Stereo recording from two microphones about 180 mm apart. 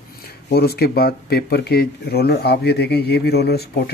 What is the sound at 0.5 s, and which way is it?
Speech, 60° left (ahead or behind).